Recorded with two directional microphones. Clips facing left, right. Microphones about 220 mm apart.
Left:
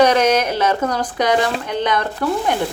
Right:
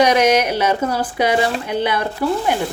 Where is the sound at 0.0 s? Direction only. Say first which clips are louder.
Even; 10° right (ahead or behind).